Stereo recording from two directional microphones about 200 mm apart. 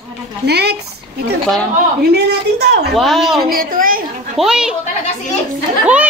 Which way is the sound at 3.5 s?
45° right (ahead or behind).